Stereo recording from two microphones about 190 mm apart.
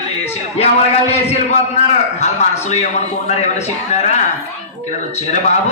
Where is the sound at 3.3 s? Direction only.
35° left (ahead or behind).